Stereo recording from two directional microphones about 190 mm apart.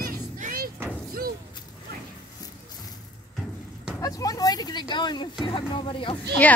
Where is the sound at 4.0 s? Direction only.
20° left (ahead or behind).